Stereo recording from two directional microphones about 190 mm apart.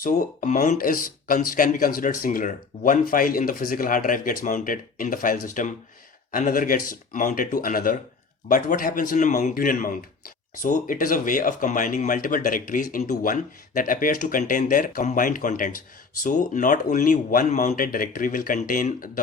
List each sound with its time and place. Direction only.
0.0 s speech: 45° left (ahead or behind)